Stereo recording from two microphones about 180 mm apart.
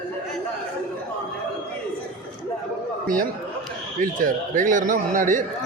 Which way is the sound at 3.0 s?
50° right (ahead or behind).